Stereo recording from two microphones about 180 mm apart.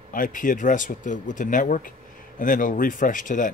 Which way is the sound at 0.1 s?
50° left (ahead or behind).